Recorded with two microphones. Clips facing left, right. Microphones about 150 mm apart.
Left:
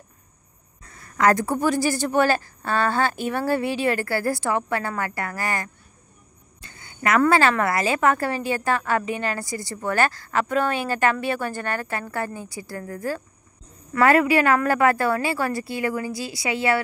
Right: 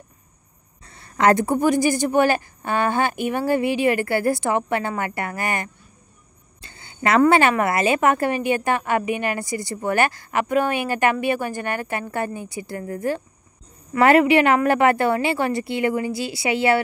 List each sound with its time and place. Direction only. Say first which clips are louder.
0.8 s a woman's voice: right 2 dB; 30° right (ahead or behind)